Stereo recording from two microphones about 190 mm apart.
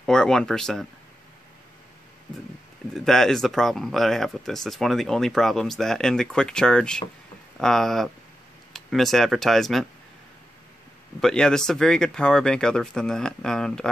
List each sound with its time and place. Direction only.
0.0 s speech: 5° left (ahead or behind)
2.9 s speech: centre (ahead or behind)
11.1 s speech: 5° left (ahead or behind)